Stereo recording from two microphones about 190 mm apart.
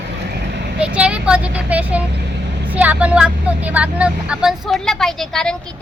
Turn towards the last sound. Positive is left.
turn(degrees=5)  # may be behind; listen again after turning